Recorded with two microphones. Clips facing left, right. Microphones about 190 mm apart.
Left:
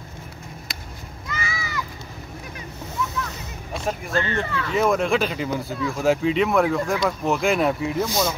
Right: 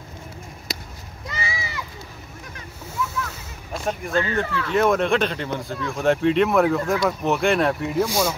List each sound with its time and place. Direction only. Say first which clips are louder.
0.7 s a sound: right 3 dB; 40° right (ahead or behind)
3.0 s splash: even; 5° right (ahead or behind)
3.7 s speech: right 1 dB; centre (ahead or behind)
8.0 s speech: right 4 dB; 10° right (ahead or behind)